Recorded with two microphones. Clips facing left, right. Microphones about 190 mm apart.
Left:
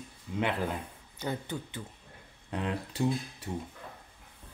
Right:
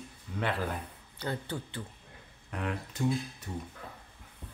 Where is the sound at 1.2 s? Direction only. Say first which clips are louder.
Left 1 dB; 15° left (ahead or behind).